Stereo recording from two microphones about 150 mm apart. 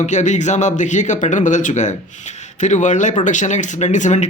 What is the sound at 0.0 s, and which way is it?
Speech, 55° left (ahead or behind).